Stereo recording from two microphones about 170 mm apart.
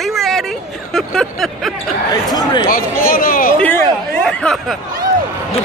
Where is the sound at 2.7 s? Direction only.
60° left (ahead or behind).